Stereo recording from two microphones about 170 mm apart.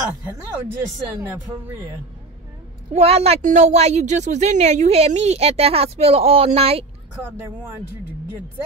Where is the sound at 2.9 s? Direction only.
40° right (ahead or behind).